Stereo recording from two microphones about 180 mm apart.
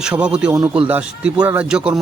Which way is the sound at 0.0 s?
5° right (ahead or behind).